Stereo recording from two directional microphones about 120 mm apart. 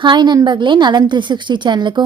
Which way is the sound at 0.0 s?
40° right (ahead or behind).